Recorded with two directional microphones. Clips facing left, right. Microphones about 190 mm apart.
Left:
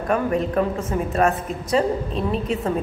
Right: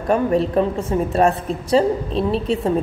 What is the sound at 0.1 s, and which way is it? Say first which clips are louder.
A woman's voice: right 4 dB; 30° right (ahead or behind).